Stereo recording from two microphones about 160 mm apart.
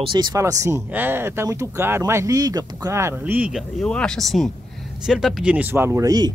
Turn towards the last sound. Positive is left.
turn(degrees=-25)  # may be behind; listen again after turning